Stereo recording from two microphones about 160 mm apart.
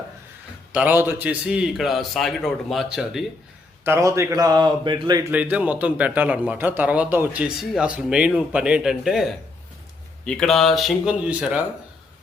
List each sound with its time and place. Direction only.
0.7 s a man's voice: 10° right (ahead or behind)
3.8 s a man's voice: 15° right (ahead or behind)
5.3 s a man's voice: 10° right (ahead or behind)